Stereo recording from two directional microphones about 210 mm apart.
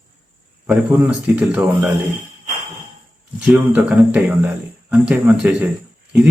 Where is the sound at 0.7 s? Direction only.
5° right (ahead or behind).